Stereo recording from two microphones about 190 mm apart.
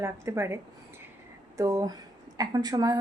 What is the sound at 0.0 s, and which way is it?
A woman's voice, 15° right (ahead or behind).